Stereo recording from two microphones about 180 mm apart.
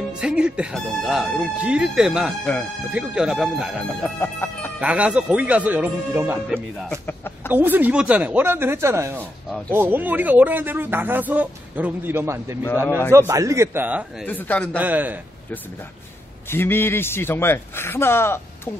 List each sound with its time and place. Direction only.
0.2 s speech: 5° right (ahead or behind)
4.2 s chicken: 10° left (ahead or behind)
4.7 s speech: 5° right (ahead or behind)
6.5 s speech: 10° left (ahead or behind)
7.5 s speech: 10° right (ahead or behind)
14.2 s speech: 10° left (ahead or behind)
14.8 s speech: 10° right (ahead or behind)
16.4 s speech: 10° left (ahead or behind)